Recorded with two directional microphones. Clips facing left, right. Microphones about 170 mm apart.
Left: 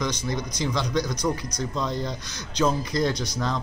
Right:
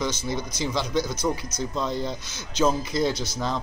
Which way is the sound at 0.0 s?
5° right (ahead or behind).